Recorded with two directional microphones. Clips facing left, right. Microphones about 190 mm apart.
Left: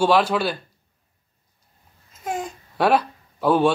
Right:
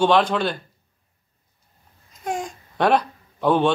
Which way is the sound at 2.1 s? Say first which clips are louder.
Right 1 dB; 5° left (ahead or behind).